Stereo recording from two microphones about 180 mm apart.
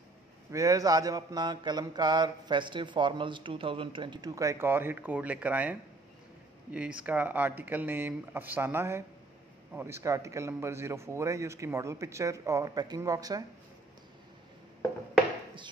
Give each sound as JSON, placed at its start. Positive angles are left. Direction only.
{"t": 0.5, "sound": "a man's voice", "side_deg": -20}